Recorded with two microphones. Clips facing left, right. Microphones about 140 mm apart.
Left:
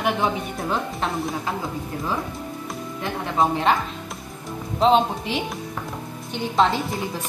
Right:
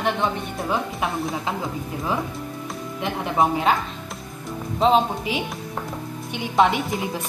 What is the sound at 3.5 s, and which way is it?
Speech, centre (ahead or behind).